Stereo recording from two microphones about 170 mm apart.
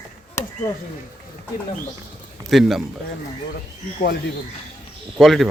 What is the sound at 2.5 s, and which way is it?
Speech, centre (ahead or behind).